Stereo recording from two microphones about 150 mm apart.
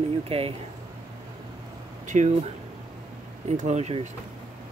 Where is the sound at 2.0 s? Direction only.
55° right (ahead or behind).